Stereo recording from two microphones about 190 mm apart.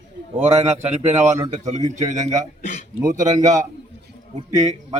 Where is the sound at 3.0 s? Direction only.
20° right (ahead or behind).